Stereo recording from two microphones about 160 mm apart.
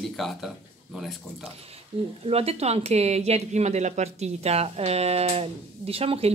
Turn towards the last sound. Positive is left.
turn(degrees=-40)  # may be behind; listen again after turning